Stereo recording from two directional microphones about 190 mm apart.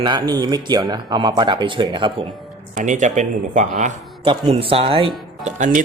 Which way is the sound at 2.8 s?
40° right (ahead or behind).